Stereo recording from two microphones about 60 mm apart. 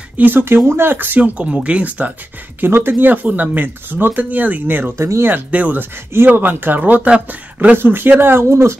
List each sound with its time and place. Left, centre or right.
0.2 s speech: right
2.6 s speech: right
4.9 s speech: right
5.2 s speech: right
7.7 s speech: right